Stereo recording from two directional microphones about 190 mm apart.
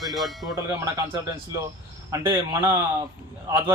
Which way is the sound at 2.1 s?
15° right (ahead or behind).